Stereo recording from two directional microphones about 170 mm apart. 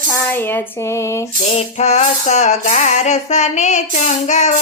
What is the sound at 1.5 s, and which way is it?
Music, 40° left (ahead or behind).